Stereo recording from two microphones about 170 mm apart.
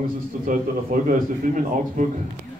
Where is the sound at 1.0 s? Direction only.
50° right (ahead or behind).